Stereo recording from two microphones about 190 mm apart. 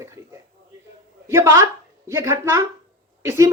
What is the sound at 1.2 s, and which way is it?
A woman's voice, 15° right (ahead or behind).